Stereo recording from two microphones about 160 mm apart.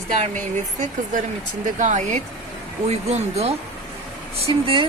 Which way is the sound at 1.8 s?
50° right (ahead or behind).